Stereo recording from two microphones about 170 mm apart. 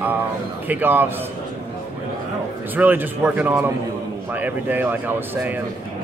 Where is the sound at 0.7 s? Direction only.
10° right (ahead or behind).